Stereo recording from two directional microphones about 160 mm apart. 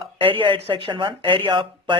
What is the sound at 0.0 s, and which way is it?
Speech, 35° right (ahead or behind).